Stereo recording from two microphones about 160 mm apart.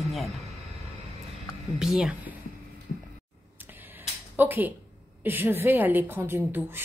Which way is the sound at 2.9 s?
50° left (ahead or behind).